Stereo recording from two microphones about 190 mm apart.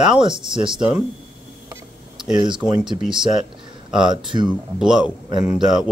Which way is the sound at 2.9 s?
5° right (ahead or behind).